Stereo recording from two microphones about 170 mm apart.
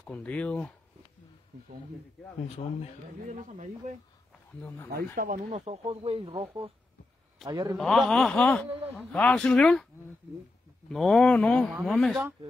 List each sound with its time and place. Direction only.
0.0 s speech: 10° left (ahead or behind)
2.4 s speech: 35° left (ahead or behind)
3.3 s speech: 45° right (ahead or behind)
4.6 s speech: 10° left (ahead or behind)
4.9 s speech: 55° right (ahead or behind)
5.5 s a man's voice: 35° right (ahead or behind)
7.7 s a man's voice: centre (ahead or behind)
10.9 s a man's voice: centre (ahead or behind)